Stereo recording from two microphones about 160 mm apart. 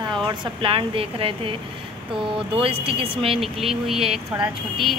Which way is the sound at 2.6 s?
35° right (ahead or behind).